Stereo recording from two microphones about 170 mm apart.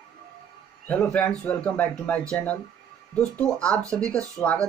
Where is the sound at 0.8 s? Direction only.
5° left (ahead or behind).